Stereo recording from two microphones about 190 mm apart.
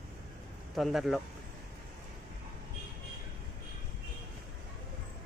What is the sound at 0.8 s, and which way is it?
Speech, centre (ahead or behind).